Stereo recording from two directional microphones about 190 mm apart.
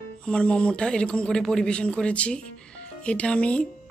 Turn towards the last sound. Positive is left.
turn(degrees=5)  # may be behind; listen again after turning